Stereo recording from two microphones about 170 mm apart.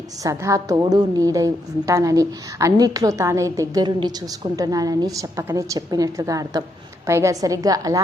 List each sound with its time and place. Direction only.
0.2 s a woman's voice: 20° right (ahead or behind)